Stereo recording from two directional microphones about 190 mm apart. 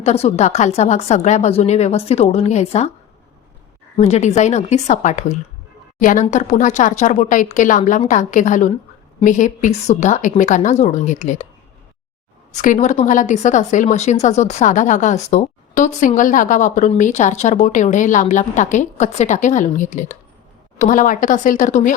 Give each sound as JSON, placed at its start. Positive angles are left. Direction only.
{"t": 0.0, "sound": "a woman's voice", "side_deg": 35}
{"t": 3.9, "sound": "a woman's voice", "side_deg": 35}
{"t": 12.5, "sound": "a woman's voice", "side_deg": 40}